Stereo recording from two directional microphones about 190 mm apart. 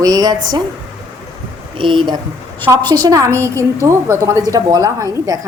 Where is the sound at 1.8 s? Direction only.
25° right (ahead or behind).